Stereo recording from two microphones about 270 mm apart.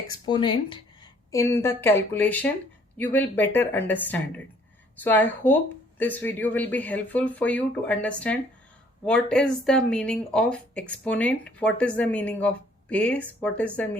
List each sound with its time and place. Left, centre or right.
0.1 s speech: centre